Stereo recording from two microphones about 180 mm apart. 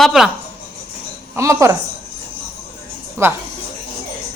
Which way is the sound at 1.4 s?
15° right (ahead or behind).